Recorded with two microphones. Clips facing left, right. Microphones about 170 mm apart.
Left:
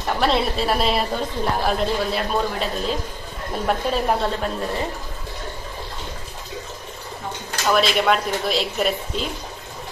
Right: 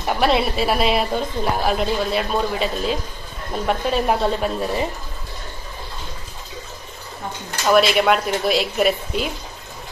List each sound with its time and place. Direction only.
0.0 s a woman's voice: 5° right (ahead or behind)
7.7 s a woman's voice: 5° right (ahead or behind)